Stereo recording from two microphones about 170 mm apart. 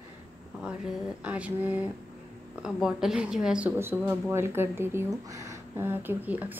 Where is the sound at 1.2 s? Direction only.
10° right (ahead or behind).